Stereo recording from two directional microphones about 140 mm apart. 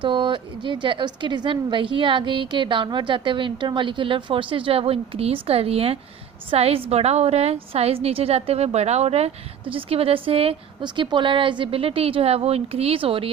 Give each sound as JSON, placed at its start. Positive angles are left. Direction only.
{"t": 0.0, "sound": "a woman's voice", "side_deg": -35}